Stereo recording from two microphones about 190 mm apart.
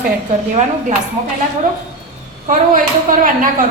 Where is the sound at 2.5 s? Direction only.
45° right (ahead or behind).